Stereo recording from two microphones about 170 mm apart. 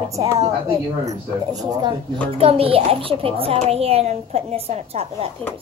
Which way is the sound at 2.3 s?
35° right (ahead or behind).